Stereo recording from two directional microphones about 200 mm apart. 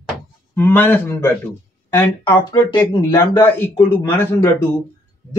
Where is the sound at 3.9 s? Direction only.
10° left (ahead or behind).